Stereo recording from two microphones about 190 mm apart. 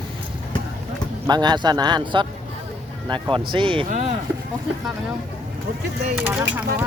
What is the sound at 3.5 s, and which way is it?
Speech, 25° right (ahead or behind).